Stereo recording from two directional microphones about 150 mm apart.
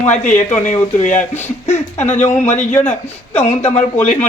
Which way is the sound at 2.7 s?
10° left (ahead or behind).